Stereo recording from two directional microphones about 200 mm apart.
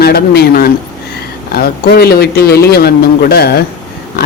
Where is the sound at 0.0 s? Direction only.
50° left (ahead or behind).